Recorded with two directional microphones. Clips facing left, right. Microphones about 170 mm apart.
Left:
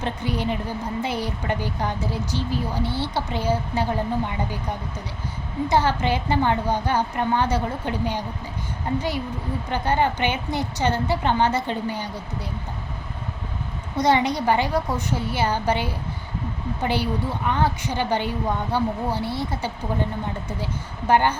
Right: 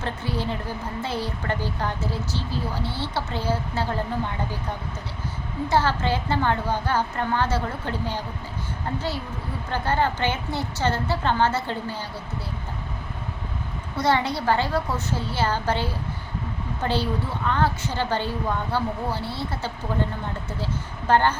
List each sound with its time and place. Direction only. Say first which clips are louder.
0.0 s a woman's voice: left 2 dB; 15° left (ahead or behind)
5.6 s a woman's voice: left 1 dB; 15° left (ahead or behind)
13.9 s a woman's voice: left 3 dB; 15° left (ahead or behind)
21.1 s a woman's voice: left 1 dB; 15° left (ahead or behind)